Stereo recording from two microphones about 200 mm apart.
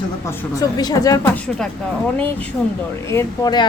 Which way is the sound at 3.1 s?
20° left (ahead or behind).